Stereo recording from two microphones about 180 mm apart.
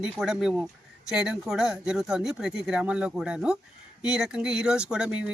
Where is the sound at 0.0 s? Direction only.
5° right (ahead or behind).